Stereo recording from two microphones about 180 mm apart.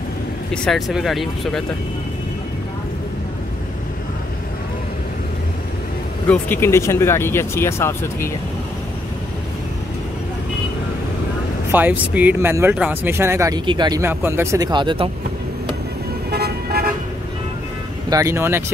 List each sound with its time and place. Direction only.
0.7 s speech: centre (ahead or behind)
6.2 s speech: 10° left (ahead or behind)
11.7 s speech: 10° right (ahead or behind); by 15.0 s 25° right (ahead or behind)
16.3 s vehicle: 60° right (ahead or behind)
18.1 s speech: 15° right (ahead or behind)